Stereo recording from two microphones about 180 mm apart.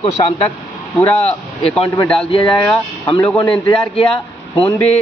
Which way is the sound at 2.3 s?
25° left (ahead or behind).